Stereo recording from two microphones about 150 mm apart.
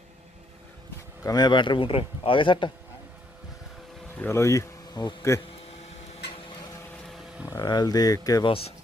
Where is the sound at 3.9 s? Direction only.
5° left (ahead or behind).